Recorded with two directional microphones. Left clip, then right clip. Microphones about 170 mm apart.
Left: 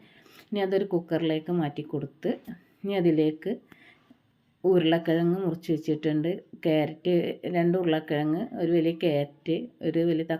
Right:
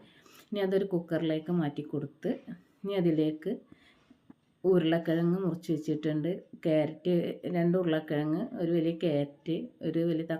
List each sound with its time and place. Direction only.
0.5 s speech: 10° left (ahead or behind)
4.6 s speech: 10° left (ahead or behind)